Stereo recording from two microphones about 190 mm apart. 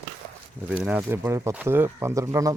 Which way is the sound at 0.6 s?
5° right (ahead or behind).